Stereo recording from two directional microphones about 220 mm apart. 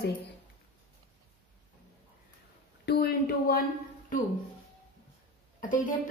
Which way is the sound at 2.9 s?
45° left (ahead or behind).